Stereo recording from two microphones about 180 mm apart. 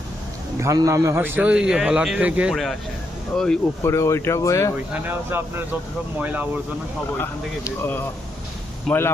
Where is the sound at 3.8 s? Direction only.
15° left (ahead or behind).